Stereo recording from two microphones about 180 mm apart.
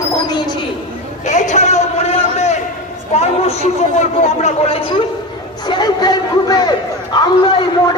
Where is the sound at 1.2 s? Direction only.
40° left (ahead or behind).